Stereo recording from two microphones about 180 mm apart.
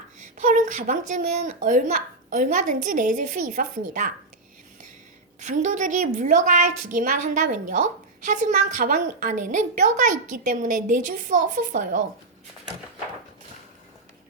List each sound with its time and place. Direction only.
0.4 s a woman's voice: 45° right (ahead or behind)
5.4 s a woman's voice: 45° right (ahead or behind)